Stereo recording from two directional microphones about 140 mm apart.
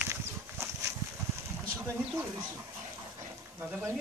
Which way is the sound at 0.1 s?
20° right (ahead or behind).